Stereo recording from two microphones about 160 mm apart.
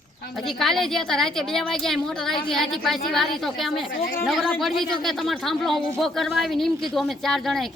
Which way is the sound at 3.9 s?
60° left (ahead or behind).